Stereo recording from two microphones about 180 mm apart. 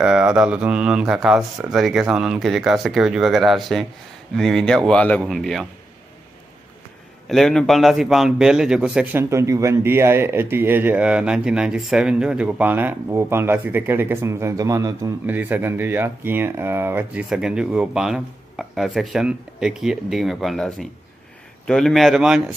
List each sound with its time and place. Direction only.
0.0 s speech: 5° right (ahead or behind)
7.2 s a man's voice: centre (ahead or behind)